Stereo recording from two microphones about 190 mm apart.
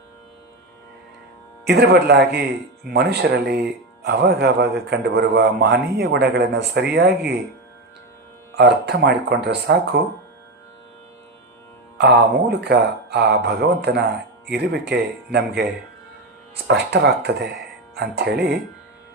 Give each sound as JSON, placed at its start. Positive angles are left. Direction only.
{"t": 1.6, "sound": "speech", "side_deg": -60}
{"t": 8.5, "sound": "speech", "side_deg": -60}
{"t": 11.9, "sound": "speech", "side_deg": -60}
{"t": 16.6, "sound": "speech", "side_deg": -60}